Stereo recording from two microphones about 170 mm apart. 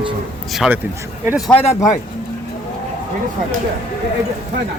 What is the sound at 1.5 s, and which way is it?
Speech, 15° left (ahead or behind).